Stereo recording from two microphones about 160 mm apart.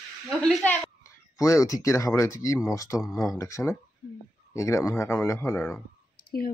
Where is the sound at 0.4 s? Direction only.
10° left (ahead or behind).